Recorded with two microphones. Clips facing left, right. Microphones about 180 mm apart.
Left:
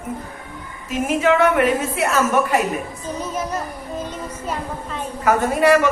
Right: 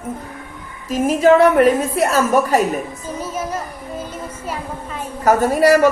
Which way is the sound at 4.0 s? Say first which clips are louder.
Even; 10° right (ahead or behind).